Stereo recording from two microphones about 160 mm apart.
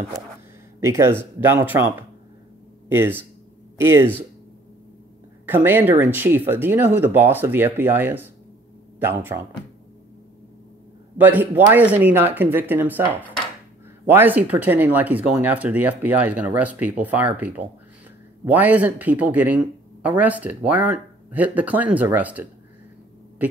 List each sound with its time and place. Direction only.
0.7 s speech: 15° right (ahead or behind)
5.5 s speech: 10° right (ahead or behind)
11.1 s speech: 10° right (ahead or behind)